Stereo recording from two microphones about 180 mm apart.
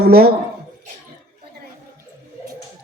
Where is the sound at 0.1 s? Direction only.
60° right (ahead or behind).